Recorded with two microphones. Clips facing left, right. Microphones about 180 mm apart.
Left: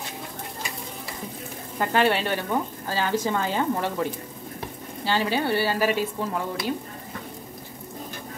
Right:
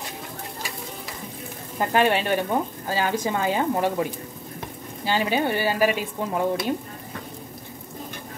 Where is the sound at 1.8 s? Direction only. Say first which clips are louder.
Right 1 dB; 15° right (ahead or behind).